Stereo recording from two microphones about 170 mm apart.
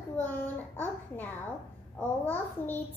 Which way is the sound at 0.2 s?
10° left (ahead or behind).